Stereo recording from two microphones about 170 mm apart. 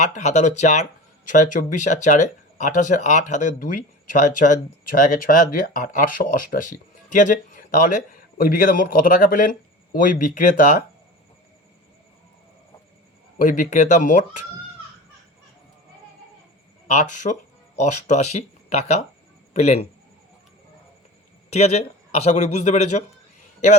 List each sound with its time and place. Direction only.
0.0 s speech: 45° left (ahead or behind)
13.4 s speech: 50° left (ahead or behind)
16.9 s a man's voice: 45° left (ahead or behind)
21.5 s a man's voice: 40° left (ahead or behind)